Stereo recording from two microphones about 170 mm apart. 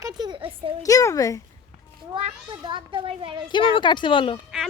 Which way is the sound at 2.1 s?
30° right (ahead or behind).